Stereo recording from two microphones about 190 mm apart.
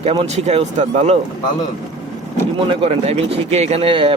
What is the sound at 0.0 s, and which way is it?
A man's voice, 30° right (ahead or behind).